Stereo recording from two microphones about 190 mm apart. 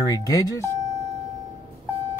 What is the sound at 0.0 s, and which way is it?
Speech, 20° left (ahead or behind).